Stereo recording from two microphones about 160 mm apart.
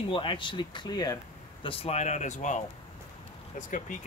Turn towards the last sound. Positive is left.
turn(degrees=55)  # may be behind; listen again after turning